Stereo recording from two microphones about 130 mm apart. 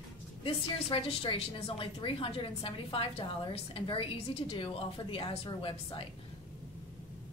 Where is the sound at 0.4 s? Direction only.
45° left (ahead or behind).